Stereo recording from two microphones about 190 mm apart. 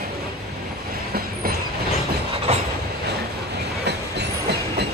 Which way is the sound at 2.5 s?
35° right (ahead or behind).